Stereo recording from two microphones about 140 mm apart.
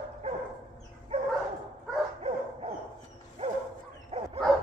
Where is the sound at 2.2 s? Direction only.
50° right (ahead or behind).